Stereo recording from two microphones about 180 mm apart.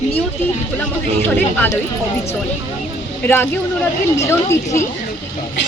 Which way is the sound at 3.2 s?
10° left (ahead or behind).